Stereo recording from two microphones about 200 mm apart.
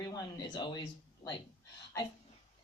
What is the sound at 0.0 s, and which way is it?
Speech, 20° left (ahead or behind).